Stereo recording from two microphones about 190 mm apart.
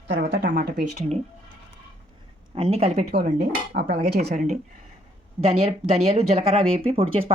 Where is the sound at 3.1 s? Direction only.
50° right (ahead or behind).